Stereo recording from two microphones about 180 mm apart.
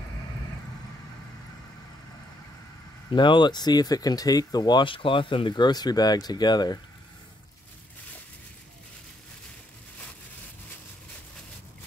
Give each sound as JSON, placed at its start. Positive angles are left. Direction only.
{"t": 3.1, "sound": "speech", "side_deg": 25}